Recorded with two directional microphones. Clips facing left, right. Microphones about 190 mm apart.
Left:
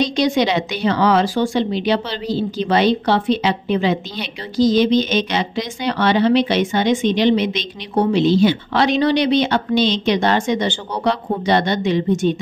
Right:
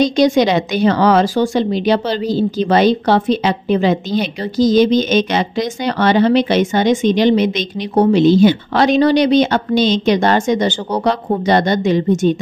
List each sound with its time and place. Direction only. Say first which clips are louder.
0.0 s speech: right 5 dB; 45° right (ahead or behind)